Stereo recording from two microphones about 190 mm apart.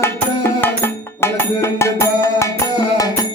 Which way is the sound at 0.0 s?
15° left (ahead or behind).